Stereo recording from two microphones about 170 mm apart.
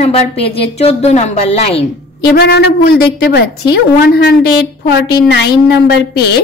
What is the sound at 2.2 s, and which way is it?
A woman's voice, 70° left (ahead or behind).